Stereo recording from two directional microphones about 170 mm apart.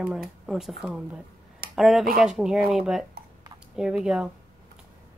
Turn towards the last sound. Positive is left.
turn(degrees=-5)  # may be behind; listen again after turning